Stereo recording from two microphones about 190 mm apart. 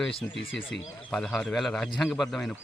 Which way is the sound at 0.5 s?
90° left.